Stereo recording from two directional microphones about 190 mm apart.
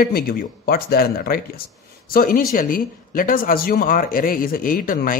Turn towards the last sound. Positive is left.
turn(degrees=45)  # may be behind; listen again after turning